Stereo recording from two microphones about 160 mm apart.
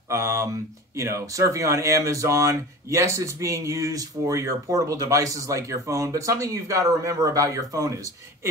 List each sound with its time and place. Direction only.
0.1 s speech: 20° right (ahead or behind)